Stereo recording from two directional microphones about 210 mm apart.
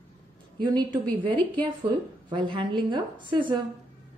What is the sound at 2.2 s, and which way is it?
A woman's voice, 25° right (ahead or behind).